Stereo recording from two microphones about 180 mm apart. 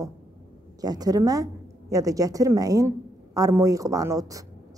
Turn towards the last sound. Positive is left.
turn(degrees=-20)  # may be behind; listen again after turning